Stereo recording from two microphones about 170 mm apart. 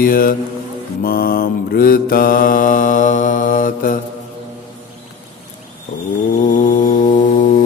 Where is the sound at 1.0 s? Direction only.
60° left (ahead or behind).